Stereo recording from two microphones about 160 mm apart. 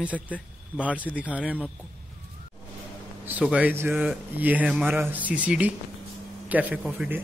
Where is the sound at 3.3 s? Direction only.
10° right (ahead or behind).